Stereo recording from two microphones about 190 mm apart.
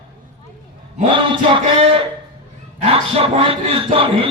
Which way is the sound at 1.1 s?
25° right (ahead or behind).